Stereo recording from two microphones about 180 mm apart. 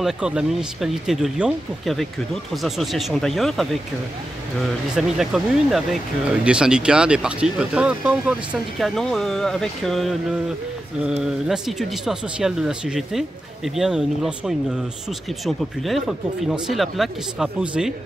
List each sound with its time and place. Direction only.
0.0 s speech: 5° right (ahead or behind)
4.9 s speech: centre (ahead or behind)
11.4 s speech: centre (ahead or behind)